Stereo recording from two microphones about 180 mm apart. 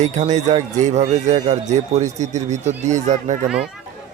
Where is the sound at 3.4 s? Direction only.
5° right (ahead or behind).